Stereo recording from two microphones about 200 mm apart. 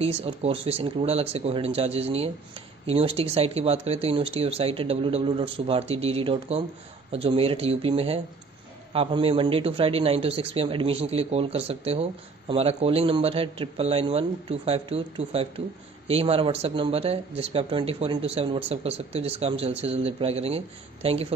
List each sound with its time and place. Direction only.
0.0 s speech: 30° right (ahead or behind)